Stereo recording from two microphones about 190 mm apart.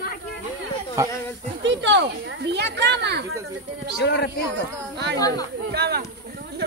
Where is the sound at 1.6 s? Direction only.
70° right (ahead or behind).